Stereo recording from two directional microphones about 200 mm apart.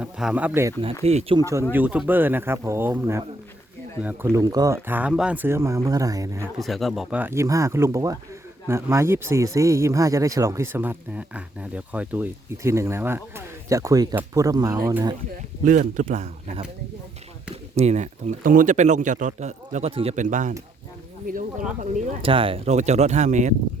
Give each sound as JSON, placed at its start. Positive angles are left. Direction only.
{"t": 0.0, "sound": "speech", "side_deg": -5}
{"t": 1.0, "sound": "speech", "side_deg": -30}
{"t": 1.7, "sound": "speech", "side_deg": -5}
{"t": 6.6, "sound": "speech", "side_deg": 0}
{"t": 15.6, "sound": "speech", "side_deg": -40}
{"t": 21.8, "sound": "speech", "side_deg": -25}